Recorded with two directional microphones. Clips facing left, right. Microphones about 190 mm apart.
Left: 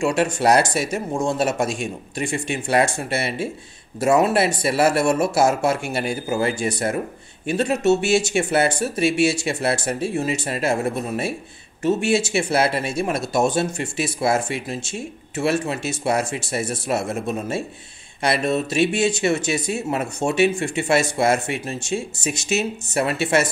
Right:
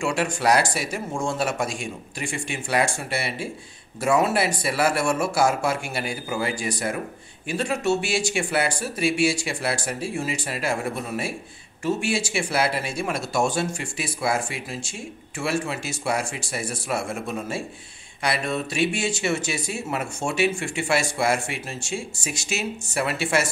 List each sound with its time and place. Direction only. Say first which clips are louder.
0.0 s speech: left 4 dB; 20° left (ahead or behind)